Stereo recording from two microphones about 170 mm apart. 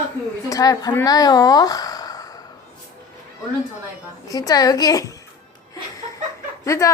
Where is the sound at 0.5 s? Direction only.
20° left (ahead or behind).